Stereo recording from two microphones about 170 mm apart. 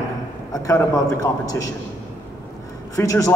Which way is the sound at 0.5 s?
20° left (ahead or behind).